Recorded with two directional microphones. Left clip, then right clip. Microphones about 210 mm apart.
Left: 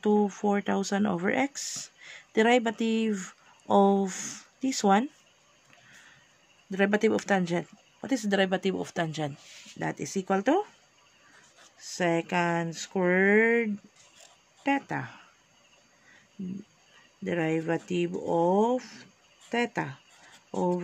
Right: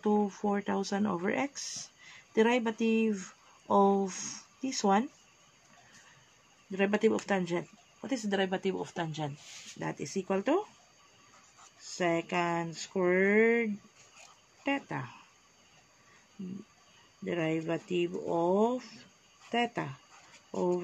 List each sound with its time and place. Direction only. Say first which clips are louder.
0.0 s speech: left 4 dB; 60° left (ahead or behind)
6.7 s speech: left 3 dB; 55° left (ahead or behind)
11.8 s speech: left 3 dB; 50° left (ahead or behind)
17.2 s speech: left 4 dB; 50° left (ahead or behind)